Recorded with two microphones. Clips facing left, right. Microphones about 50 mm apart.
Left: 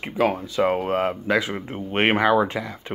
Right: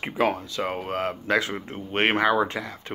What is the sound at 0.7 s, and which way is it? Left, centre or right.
Speech, left.